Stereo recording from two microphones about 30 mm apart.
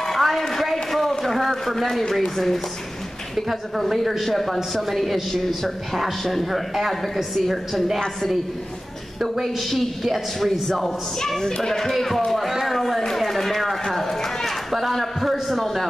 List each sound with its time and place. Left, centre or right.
0.2 s a sound: centre
1.2 s a woman's voice: centre
3.9 s a man's voice: centre
4.2 s a woman's voice: centre
6.5 s a man's voice: centre
9.2 s a man's voice: centre
11.4 s speech: centre
12.3 s a man's voice: centre
12.7 s a sound: centre
13.9 s run: centre
14.7 s a man's voice: centre